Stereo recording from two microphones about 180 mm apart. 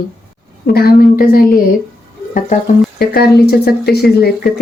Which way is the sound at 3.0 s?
60° left (ahead or behind).